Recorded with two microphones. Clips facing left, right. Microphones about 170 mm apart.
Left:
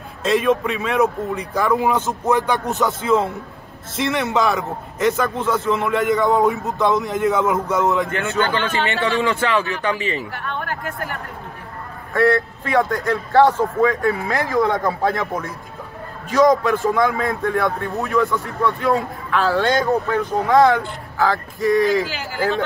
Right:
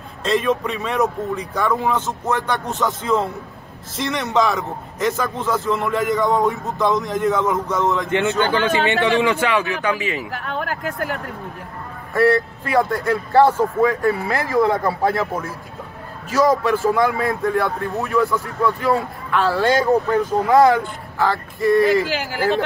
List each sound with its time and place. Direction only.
0.2 s a man's voice: centre (ahead or behind)
2.3 s rapping: 10° left (ahead or behind)
2.8 s a man's voice: centre (ahead or behind)
8.1 s a man's voice: 20° right (ahead or behind)
12.3 s a man's voice: 5° right (ahead or behind)
16.3 s a man's voice: 5° right (ahead or behind)